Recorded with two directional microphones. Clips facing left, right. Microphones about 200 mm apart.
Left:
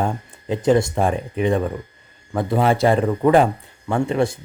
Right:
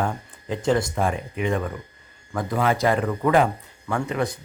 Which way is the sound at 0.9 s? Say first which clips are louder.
Left 4 dB; 35° left (ahead or behind).